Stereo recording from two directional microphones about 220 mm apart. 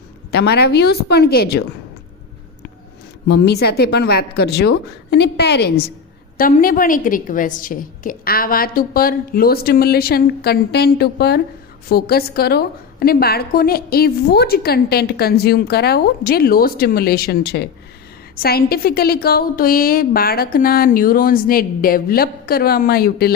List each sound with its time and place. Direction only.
0.3 s a woman's voice: 50° left (ahead or behind)
3.2 s a woman's voice: 50° left (ahead or behind)